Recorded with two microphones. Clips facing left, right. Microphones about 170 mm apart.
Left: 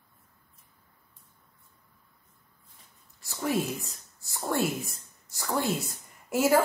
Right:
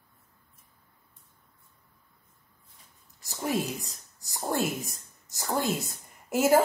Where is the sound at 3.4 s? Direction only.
15° right (ahead or behind).